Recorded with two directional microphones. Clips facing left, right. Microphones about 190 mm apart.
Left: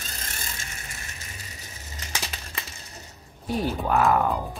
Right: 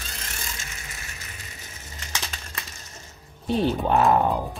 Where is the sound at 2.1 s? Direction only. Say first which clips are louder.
Even; 10° left (ahead or behind).